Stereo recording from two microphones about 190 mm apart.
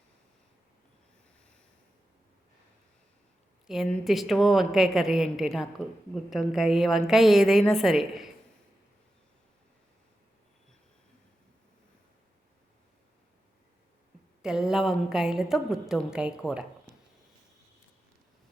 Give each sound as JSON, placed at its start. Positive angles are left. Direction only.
{"t": 3.7, "sound": "a woman's voice", "side_deg": 0}
{"t": 14.4, "sound": "a woman's voice", "side_deg": -5}